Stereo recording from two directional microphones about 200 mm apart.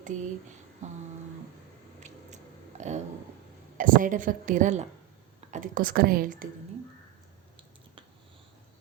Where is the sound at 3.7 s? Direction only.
40° right (ahead or behind).